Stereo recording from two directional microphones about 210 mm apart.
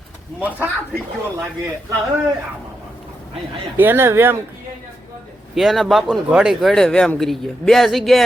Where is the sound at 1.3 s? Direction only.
10° right (ahead or behind).